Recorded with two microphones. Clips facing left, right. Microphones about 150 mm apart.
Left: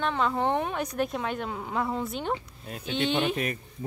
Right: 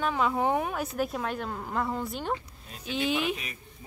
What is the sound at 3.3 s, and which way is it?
Speech, 50° left (ahead or behind).